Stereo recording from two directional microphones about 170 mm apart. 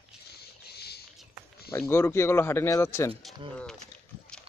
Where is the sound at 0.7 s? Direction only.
70° left (ahead or behind).